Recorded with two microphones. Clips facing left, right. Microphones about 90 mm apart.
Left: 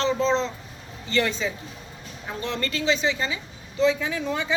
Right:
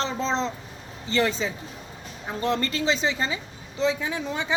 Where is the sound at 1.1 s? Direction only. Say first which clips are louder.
Even; 25° right (ahead or behind).